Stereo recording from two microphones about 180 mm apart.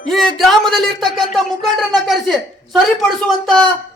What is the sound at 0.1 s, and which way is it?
Speech, centre (ahead or behind).